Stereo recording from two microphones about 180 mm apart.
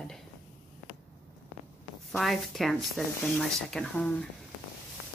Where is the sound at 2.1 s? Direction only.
Centre (ahead or behind).